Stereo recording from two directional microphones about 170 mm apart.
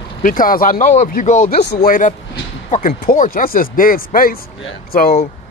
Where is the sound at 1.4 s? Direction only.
70° left (ahead or behind).